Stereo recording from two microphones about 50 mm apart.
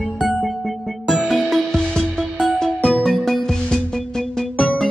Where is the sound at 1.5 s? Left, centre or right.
Centre.